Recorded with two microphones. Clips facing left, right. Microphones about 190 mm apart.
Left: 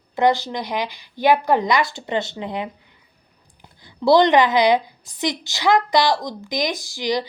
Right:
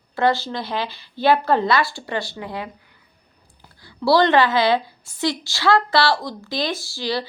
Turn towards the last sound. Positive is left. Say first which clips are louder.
# left 2 dB
turn(degrees=15)  # may be behind; listen again after turning